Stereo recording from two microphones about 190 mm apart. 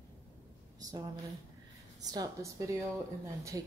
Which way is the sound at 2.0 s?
20° right (ahead or behind).